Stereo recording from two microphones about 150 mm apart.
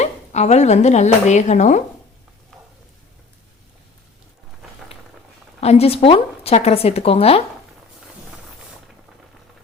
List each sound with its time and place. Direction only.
0.0 s a woman's voice: 50° left (ahead or behind)
5.5 s speech: 45° left (ahead or behind)